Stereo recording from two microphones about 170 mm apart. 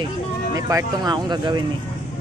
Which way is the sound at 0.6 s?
20° right (ahead or behind).